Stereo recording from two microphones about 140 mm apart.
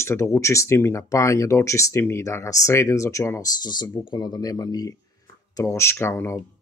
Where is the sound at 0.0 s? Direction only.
20° left (ahead or behind).